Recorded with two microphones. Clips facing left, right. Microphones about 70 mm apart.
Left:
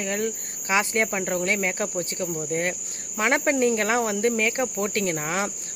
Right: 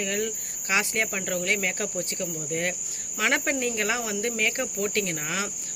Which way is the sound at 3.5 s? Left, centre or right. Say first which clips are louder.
Left 6 dB; left.